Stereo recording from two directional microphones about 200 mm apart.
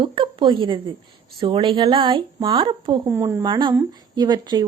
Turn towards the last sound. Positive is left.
turn(degrees=-20)  # may be behind; listen again after turning